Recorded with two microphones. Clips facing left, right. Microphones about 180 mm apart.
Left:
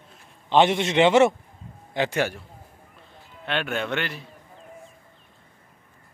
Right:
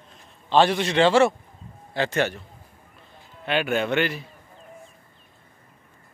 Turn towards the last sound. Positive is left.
turn(degrees=-5)  # may be behind; listen again after turning